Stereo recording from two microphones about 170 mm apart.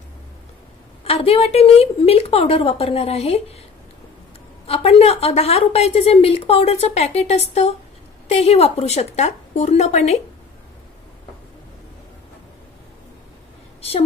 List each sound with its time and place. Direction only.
1.0 s a woman's voice: 35° left (ahead or behind)
4.6 s a woman's voice: 35° left (ahead or behind)
13.7 s a sound: 35° left (ahead or behind)